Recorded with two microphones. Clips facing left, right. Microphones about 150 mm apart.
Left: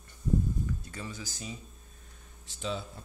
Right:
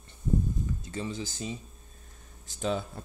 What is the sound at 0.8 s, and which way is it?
Speech, 20° right (ahead or behind).